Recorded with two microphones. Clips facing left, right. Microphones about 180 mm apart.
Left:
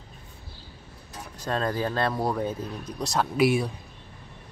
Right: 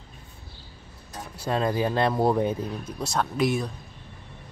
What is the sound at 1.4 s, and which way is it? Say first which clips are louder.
Speech: right 2 dB; 10° right (ahead or behind).